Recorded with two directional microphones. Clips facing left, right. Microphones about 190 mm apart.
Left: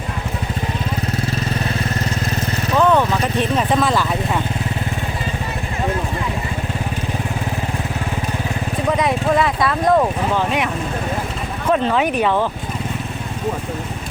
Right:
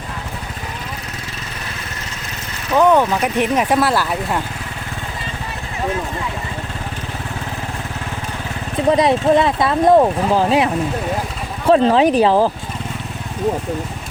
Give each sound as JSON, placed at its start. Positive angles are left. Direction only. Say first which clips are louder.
{"t": 2.7, "sound": "speech", "louder": "right 2 dB", "side_deg": -15}
{"t": 8.9, "sound": "speech", "louder": "right 5 dB", "side_deg": -35}
{"t": 11.7, "sound": "speech", "louder": "right 5 dB", "side_deg": -35}